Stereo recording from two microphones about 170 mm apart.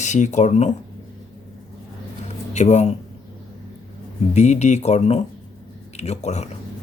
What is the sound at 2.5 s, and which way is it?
Speech, 45° left (ahead or behind).